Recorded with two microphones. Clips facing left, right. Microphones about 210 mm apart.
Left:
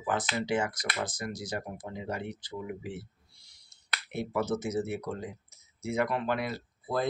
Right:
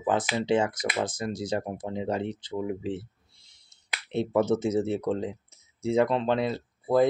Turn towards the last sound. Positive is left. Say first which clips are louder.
# right 9 dB
turn(degrees=-20)  # may be behind; listen again after turning